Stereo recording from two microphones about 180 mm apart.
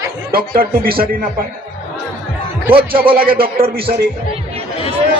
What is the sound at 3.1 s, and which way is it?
Speech, 55° right (ahead or behind).